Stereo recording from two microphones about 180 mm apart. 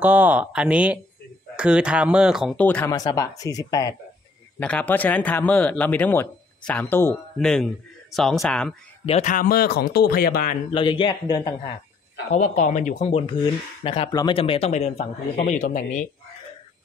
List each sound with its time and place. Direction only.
0.0 s speech: 10° right (ahead or behind); by 2.9 s 10° left (ahead or behind)
2.9 s speech: 20° left (ahead or behind)
4.6 s a man's voice: 10° left (ahead or behind)
9.0 s speech: 40° left (ahead or behind)
10.7 s speech: 25° left (ahead or behind)
12.3 s speech: 40° left (ahead or behind)